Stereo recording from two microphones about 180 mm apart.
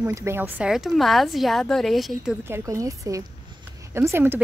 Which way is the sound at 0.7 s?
Centre (ahead or behind).